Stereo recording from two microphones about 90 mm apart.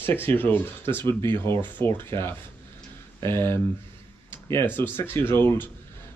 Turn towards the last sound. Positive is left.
turn(degrees=25)  # may be behind; listen again after turning